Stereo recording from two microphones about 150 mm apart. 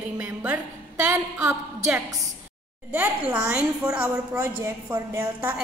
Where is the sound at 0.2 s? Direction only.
10° right (ahead or behind).